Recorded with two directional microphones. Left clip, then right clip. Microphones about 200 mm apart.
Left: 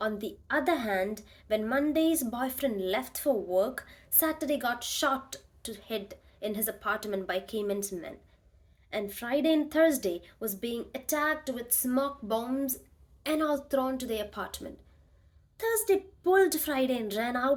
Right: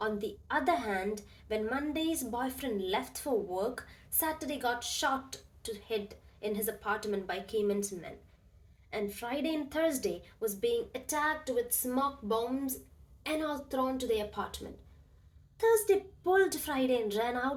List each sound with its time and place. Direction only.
0.0 s a woman's voice: 50° left (ahead or behind)